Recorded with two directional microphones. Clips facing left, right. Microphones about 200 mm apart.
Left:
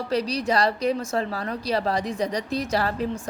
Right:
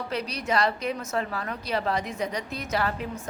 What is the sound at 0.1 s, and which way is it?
Speech, 35° left (ahead or behind).